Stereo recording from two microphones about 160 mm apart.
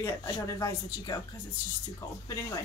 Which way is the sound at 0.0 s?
20° left (ahead or behind).